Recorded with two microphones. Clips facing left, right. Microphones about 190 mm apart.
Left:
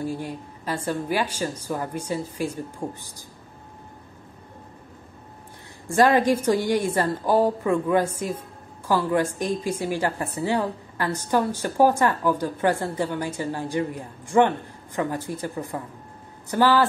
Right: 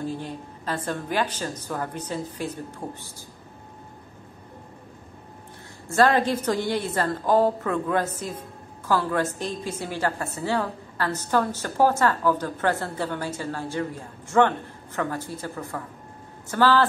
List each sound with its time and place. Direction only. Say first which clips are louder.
0.0 s a woman's voice: left 2 dB; 10° left (ahead or behind)
5.9 s a woman's voice: left 2 dB; 15° left (ahead or behind)